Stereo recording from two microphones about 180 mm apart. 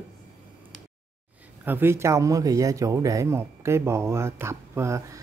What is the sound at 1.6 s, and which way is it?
Speech, 10° right (ahead or behind).